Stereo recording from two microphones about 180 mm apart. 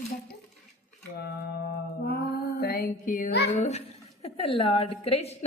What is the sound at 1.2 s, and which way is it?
Mantra, 65° left (ahead or behind).